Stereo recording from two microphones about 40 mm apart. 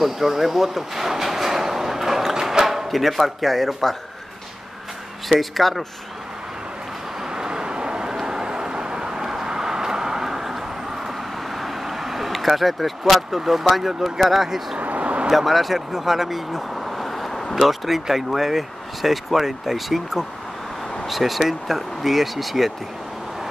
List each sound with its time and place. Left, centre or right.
0.0 s a sound: centre
2.4 s speech: centre
5.3 s speech: centre
7.3 s vehicle: centre
11.5 s speech: centre
14.8 s vehicle: right
15.2 s speech: centre
17.6 s speech: centre